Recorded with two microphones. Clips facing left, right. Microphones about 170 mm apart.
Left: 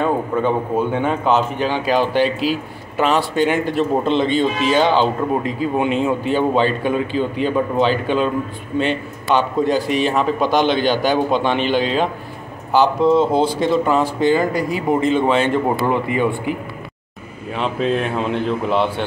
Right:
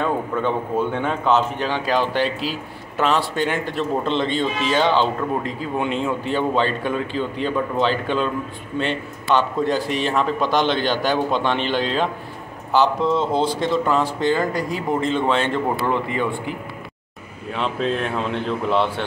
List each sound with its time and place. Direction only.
0.7 s a man's voice: 5° left (ahead or behind)